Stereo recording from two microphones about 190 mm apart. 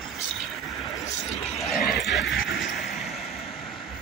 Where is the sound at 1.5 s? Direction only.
Centre (ahead or behind).